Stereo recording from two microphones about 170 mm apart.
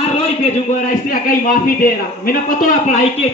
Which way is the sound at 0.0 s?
35° left (ahead or behind).